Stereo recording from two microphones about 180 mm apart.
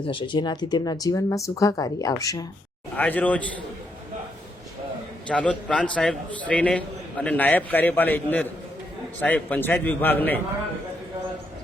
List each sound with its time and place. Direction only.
0.0 s speech: 30° left (ahead or behind)
2.9 s a man's voice: 5° left (ahead or behind)
5.3 s a man's voice: 5° left (ahead or behind)